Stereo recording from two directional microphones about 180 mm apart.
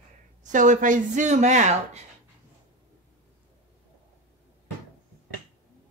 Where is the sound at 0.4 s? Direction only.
45° right (ahead or behind).